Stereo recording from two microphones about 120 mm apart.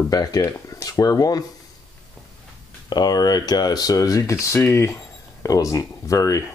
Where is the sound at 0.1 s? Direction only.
30° left (ahead or behind).